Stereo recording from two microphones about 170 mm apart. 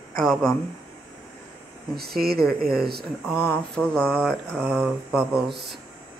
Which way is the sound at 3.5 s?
5° left (ahead or behind).